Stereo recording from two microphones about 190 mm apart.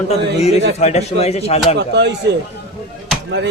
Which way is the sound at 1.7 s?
65° right (ahead or behind).